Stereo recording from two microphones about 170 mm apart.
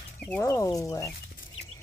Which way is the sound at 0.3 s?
20° left (ahead or behind).